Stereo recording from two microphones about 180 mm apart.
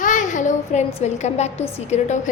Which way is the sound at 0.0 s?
45° left (ahead or behind).